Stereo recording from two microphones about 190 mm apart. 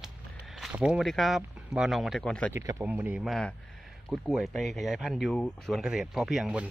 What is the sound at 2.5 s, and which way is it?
Speech, 15° right (ahead or behind).